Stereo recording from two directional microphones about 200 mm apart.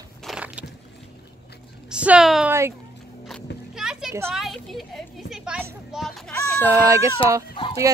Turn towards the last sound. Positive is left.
turn(degrees=25)  # may be behind; listen again after turning